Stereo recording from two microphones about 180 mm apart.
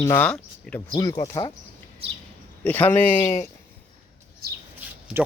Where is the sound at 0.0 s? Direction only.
15° left (ahead or behind).